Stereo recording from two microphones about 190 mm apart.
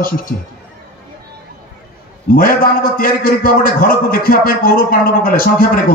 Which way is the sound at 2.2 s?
50° left (ahead or behind).